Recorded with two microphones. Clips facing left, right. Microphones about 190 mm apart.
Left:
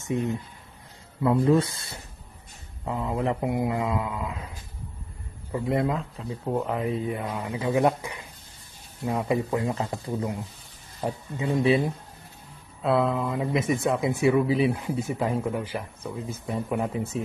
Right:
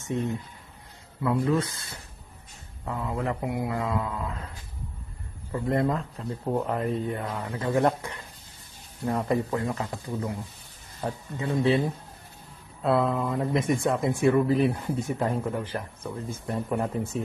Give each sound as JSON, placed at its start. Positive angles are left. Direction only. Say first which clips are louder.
{"t": 1.2, "sound": "speech", "louder": "left 4 dB", "side_deg": 25}
{"t": 2.8, "sound": "mantra", "louder": "left 3 dB", "side_deg": 20}
{"t": 5.7, "sound": "speech", "louder": "even", "side_deg": 0}
{"t": 9.0, "sound": "mantra", "louder": "even", "side_deg": 10}
{"t": 9.6, "sound": "speech", "louder": "left 2 dB", "side_deg": 20}
{"t": 11.1, "sound": "mantra", "louder": "left 2 dB", "side_deg": 15}
{"t": 12.8, "sound": "speech", "louder": "left 1 dB", "side_deg": 0}